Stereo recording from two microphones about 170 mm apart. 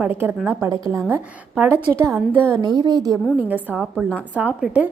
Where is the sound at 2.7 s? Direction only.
25° right (ahead or behind).